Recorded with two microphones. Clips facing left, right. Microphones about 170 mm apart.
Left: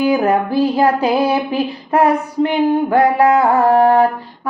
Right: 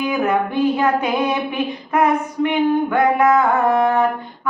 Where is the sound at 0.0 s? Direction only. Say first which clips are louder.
Left 4 dB; 35° left (ahead or behind).